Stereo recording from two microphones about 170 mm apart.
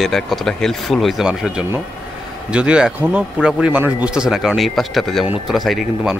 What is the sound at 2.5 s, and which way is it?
Speech, 5° right (ahead or behind).